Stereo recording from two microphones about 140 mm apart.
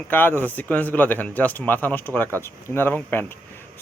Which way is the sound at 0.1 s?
15° left (ahead or behind).